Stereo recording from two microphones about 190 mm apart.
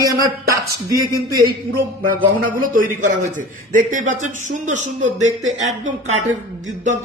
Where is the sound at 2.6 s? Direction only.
45° right (ahead or behind).